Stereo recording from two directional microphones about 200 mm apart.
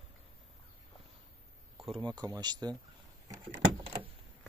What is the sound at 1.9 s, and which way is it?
Speech, 20° right (ahead or behind).